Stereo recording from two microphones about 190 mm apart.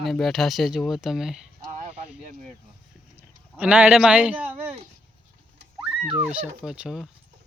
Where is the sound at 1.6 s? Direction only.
35° right (ahead or behind).